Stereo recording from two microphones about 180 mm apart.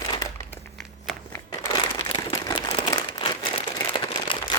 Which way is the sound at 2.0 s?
25° left (ahead or behind).